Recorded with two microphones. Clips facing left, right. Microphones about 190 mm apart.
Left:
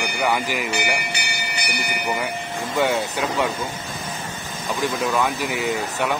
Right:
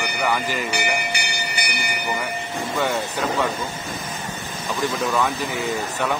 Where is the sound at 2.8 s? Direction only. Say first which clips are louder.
Left 3 dB; 15° left (ahead or behind).